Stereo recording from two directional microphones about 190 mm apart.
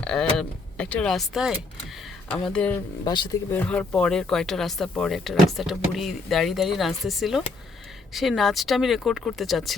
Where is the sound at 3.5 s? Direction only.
5° left (ahead or behind).